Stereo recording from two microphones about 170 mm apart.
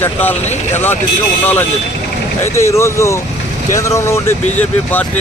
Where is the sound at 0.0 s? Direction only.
10° left (ahead or behind).